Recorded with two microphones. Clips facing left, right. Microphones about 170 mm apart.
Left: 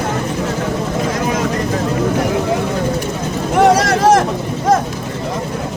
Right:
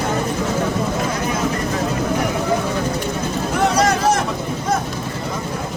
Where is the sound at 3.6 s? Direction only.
90° left.